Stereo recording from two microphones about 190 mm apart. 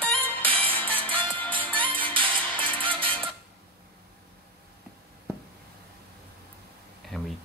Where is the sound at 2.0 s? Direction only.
25° right (ahead or behind).